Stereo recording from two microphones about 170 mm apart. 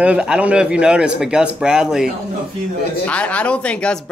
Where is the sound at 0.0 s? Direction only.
5° right (ahead or behind).